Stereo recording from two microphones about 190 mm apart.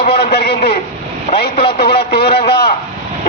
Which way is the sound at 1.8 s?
55° left (ahead or behind).